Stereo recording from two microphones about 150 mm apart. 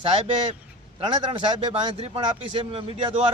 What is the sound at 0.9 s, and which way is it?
Speech, 35° right (ahead or behind).